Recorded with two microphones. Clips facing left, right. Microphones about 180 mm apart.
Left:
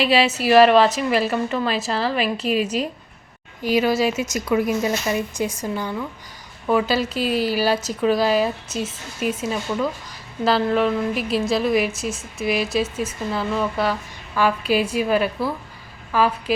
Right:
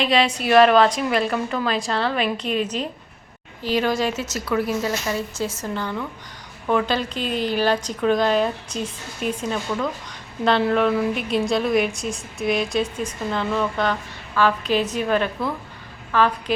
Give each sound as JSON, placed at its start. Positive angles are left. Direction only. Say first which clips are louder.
{"t": 0.0, "sound": "a woman's voice", "louder": "left 2 dB", "side_deg": 5}